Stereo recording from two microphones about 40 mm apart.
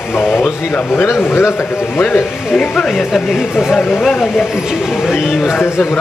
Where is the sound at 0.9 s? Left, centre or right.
Left.